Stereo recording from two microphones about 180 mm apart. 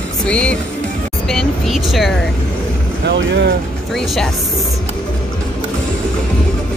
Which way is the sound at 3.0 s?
70° right (ahead or behind).